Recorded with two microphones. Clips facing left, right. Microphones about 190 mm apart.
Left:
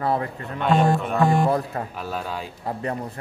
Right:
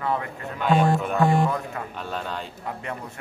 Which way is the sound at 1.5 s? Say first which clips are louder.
Left 5 dB; 35° left (ahead or behind).